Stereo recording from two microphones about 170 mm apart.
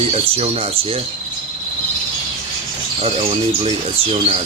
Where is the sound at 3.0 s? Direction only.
40° right (ahead or behind).